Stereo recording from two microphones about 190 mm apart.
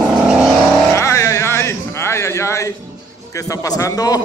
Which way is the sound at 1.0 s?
15° left (ahead or behind).